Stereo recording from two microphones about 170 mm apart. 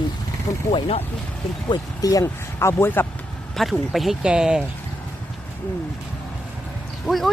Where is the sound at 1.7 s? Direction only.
20° left (ahead or behind).